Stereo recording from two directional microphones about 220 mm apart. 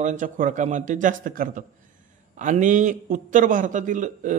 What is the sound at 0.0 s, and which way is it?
A man's voice, 35° right (ahead or behind).